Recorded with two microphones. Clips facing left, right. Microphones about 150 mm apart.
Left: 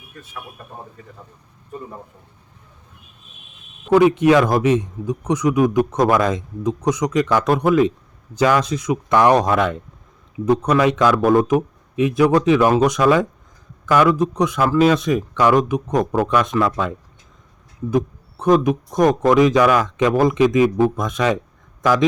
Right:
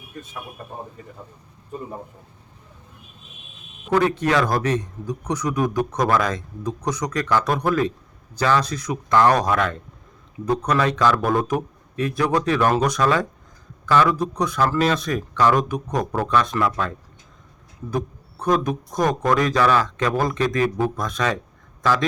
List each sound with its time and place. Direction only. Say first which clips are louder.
3.9 s speech: left 6 dB; 15° left (ahead or behind)
4.7 s a man's voice: left 6 dB; 20° left (ahead or behind)
7.4 s speech: left 5 dB; 5° left (ahead or behind)
18.5 s speech: left 6 dB; 10° left (ahead or behind)